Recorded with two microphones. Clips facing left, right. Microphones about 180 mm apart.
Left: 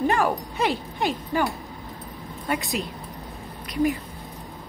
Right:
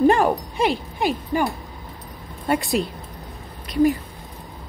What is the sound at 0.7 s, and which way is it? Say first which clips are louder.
Speech: right 3 dB; 10° right (ahead or behind).